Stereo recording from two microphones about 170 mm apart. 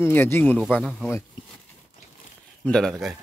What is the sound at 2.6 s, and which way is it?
Speech, 5° left (ahead or behind).